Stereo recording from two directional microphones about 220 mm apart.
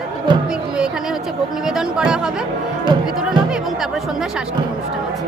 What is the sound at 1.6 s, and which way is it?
Speech, 5° right (ahead or behind).